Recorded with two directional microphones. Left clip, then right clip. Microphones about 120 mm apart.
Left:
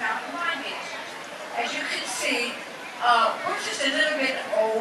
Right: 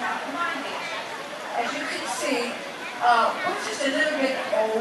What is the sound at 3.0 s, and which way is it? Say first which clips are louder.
Speech: right 1 dB; 15° left (ahead or behind).